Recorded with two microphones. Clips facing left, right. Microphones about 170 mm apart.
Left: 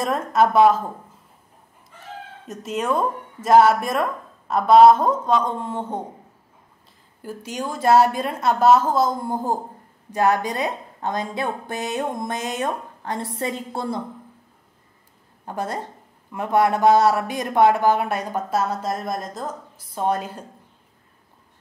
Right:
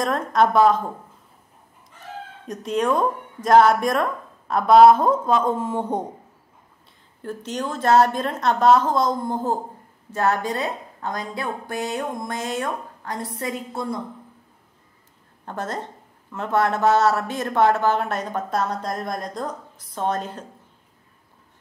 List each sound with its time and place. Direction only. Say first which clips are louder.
0.0 s speech: even; 5° left (ahead or behind)
2.4 s speech: right 3 dB; centre (ahead or behind)
7.2 s a woman's voice: right 1 dB; 10° left (ahead or behind); by 14.0 s 30° left (ahead or behind)
15.4 s speech: left 1 dB; 10° left (ahead or behind)